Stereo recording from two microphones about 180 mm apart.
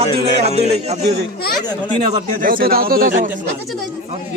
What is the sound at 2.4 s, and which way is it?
Speech, 50° right (ahead or behind).